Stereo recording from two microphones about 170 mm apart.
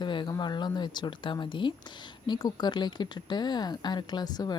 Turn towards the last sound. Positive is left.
turn(degrees=25)  # may be behind; listen again after turning